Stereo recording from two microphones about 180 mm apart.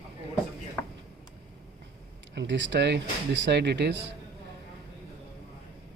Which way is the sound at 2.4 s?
90° right.